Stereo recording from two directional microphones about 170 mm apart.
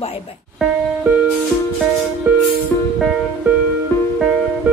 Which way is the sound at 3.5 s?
5° right (ahead or behind).